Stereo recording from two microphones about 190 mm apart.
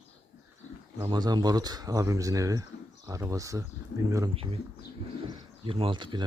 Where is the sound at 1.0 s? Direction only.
20° right (ahead or behind).